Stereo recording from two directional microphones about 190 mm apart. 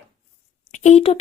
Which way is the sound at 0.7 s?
40° left (ahead or behind).